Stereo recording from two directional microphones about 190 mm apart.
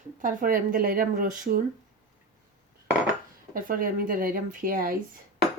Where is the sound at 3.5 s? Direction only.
45° right (ahead or behind).